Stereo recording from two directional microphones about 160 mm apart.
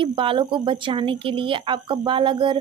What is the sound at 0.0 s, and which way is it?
A woman's voice, 30° right (ahead or behind).